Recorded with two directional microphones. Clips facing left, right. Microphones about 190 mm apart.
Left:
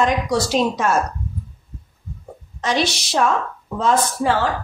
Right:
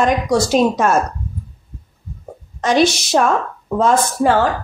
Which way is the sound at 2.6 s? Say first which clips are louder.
Right 7 dB; 45° right (ahead or behind).